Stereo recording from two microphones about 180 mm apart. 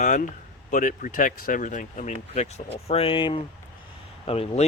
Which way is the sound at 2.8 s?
30° left (ahead or behind).